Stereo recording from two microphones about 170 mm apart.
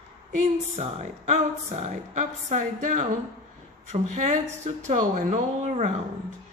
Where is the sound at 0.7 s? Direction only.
40° right (ahead or behind).